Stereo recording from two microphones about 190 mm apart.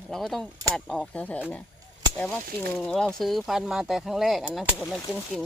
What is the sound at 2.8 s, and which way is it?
Speech, 5° left (ahead or behind).